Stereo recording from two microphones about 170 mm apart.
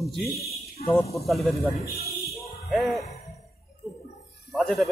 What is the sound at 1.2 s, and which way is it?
Speech, centre (ahead or behind).